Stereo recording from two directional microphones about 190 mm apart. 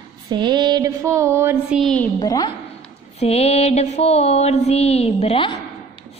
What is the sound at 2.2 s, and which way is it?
Speech, 20° left (ahead or behind).